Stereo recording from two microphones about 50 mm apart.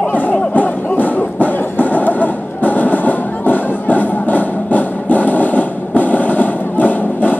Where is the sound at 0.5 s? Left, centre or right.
Left.